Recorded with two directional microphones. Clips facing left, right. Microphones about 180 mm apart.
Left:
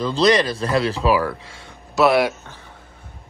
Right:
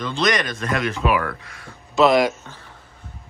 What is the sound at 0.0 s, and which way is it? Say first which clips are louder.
Speech: left 5 dB; 30° left (ahead or behind).